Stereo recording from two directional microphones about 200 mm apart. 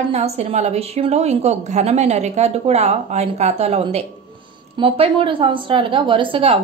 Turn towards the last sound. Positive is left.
turn(degrees=-25)  # may be behind; listen again after turning